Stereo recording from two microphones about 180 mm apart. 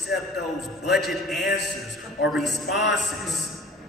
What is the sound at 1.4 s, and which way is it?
Speech, 70° left (ahead or behind).